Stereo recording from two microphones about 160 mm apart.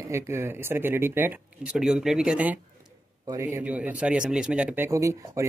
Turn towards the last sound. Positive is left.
turn(degrees=-20)  # may be behind; listen again after turning